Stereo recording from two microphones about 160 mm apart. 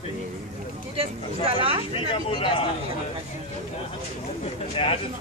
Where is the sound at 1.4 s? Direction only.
35° right (ahead or behind).